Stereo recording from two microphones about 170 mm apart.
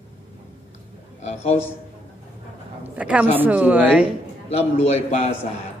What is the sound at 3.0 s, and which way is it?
A woman's voice, 10° right (ahead or behind).